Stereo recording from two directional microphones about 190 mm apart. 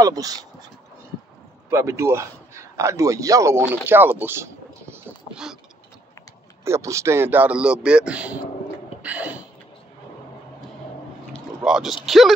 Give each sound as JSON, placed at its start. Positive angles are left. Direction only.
{"t": 0.0, "sound": "speech", "side_deg": -20}
{"t": 1.7, "sound": "a man's voice", "side_deg": -15}
{"t": 4.9, "sound": "a sound", "side_deg": -5}
{"t": 6.6, "sound": "a man's voice", "side_deg": -15}
{"t": 9.0, "sound": "a sound", "side_deg": -5}
{"t": 11.3, "sound": "speech", "side_deg": 0}